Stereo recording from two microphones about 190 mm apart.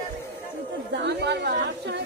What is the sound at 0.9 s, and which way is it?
A woman's voice, 60° right (ahead or behind).